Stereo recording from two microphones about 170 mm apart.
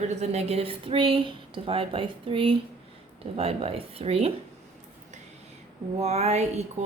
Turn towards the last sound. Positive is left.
turn(degrees=-40)  # may be behind; listen again after turning